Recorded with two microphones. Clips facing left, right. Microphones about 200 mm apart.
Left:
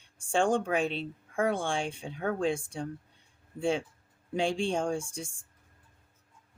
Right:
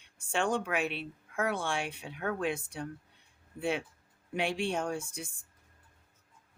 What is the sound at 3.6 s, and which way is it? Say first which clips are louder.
Speech: left 4 dB; 30° left (ahead or behind).